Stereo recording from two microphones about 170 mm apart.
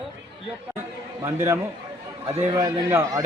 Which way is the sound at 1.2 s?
15° right (ahead or behind).